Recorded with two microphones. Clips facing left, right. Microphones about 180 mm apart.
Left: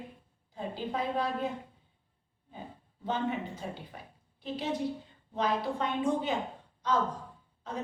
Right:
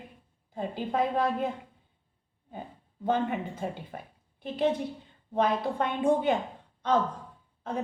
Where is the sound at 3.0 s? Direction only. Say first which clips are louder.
Right 4 dB; 50° right (ahead or behind).